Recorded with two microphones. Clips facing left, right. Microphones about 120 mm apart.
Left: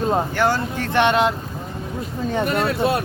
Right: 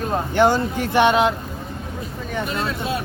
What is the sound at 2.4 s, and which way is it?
Speech, 55° left (ahead or behind).